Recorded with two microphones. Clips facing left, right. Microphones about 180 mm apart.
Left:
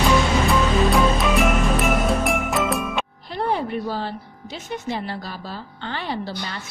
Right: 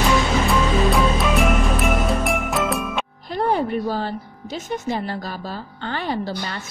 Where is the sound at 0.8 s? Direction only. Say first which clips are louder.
Even; centre (ahead or behind).